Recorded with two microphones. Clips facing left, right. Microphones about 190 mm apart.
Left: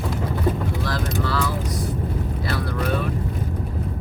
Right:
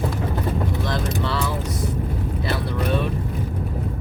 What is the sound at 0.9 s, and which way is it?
Speech, 25° right (ahead or behind).